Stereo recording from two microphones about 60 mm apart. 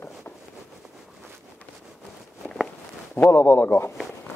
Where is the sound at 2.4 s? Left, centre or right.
Centre.